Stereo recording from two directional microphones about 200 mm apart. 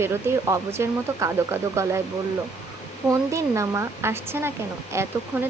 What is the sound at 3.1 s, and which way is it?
Speech, 15° right (ahead or behind).